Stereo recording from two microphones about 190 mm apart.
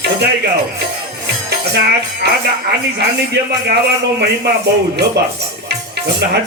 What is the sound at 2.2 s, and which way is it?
A man's voice, 60° right (ahead or behind).